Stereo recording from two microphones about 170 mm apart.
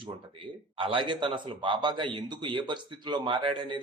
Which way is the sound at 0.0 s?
30° right (ahead or behind).